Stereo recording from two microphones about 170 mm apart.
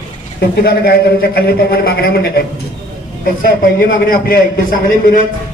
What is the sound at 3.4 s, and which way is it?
A man's voice, 55° left (ahead or behind).